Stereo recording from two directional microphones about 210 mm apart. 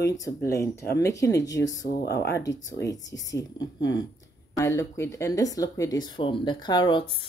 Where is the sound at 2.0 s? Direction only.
50° left (ahead or behind).